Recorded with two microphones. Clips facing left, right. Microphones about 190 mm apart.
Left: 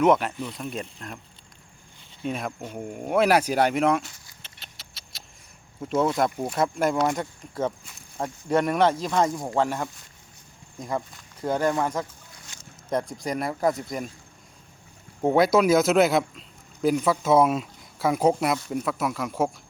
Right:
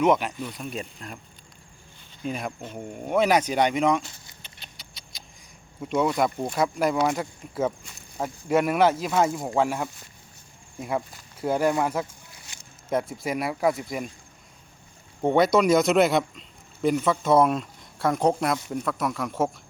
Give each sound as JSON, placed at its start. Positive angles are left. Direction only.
{"t": 0.0, "sound": "speech", "side_deg": 0}
{"t": 2.2, "sound": "speech", "side_deg": 0}
{"t": 5.8, "sound": "speech", "side_deg": 0}
{"t": 15.2, "sound": "speech", "side_deg": 5}